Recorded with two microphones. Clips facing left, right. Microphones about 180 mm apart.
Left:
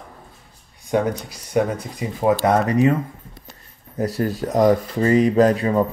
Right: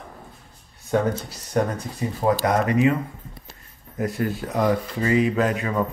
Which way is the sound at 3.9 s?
35° left (ahead or behind).